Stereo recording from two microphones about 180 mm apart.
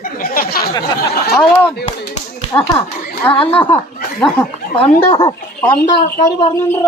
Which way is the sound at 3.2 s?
30° left (ahead or behind).